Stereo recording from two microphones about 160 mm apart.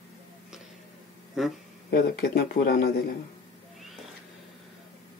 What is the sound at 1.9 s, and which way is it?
Speech, 75° left (ahead or behind).